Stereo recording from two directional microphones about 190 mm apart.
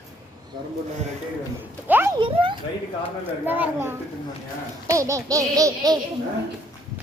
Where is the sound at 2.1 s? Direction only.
25° right (ahead or behind).